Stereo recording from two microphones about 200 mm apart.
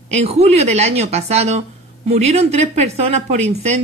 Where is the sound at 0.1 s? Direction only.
30° right (ahead or behind).